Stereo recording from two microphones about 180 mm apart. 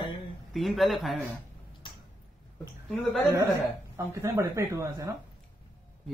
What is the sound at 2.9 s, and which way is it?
Speech, centre (ahead or behind).